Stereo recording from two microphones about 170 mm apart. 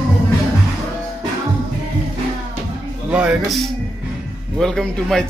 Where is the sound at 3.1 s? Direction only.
5° right (ahead or behind).